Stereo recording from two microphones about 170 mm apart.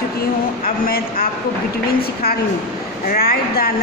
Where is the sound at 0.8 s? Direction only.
60° left (ahead or behind).